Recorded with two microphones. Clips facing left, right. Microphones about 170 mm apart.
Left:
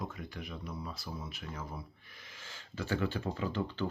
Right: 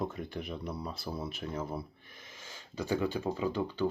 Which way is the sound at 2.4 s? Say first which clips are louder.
Right 3 dB; 15° right (ahead or behind).